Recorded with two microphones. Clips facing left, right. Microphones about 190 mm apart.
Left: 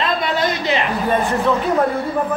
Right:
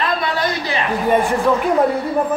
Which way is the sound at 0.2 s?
20° left (ahead or behind).